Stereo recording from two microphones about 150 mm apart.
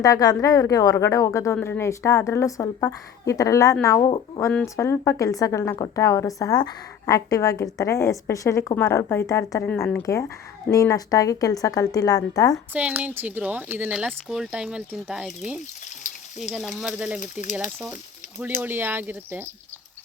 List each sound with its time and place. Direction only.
0.0 s a woman's voice: 25° left (ahead or behind)
12.7 s speech: 10° right (ahead or behind)
16.4 s speech: centre (ahead or behind)
18.6 s speech: 15° right (ahead or behind)